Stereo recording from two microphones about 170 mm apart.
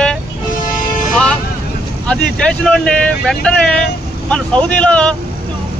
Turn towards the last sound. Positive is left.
turn(degrees=5)  # may be behind; listen again after turning